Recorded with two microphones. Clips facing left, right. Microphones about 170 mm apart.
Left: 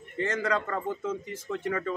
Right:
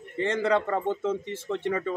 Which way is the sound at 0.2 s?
30° right (ahead or behind).